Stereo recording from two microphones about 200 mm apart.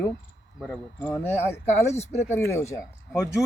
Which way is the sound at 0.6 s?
5° left (ahead or behind).